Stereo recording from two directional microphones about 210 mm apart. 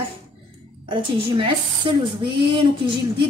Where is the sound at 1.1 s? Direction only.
25° right (ahead or behind).